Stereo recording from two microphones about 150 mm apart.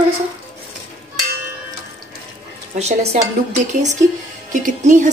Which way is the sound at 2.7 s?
50° right (ahead or behind).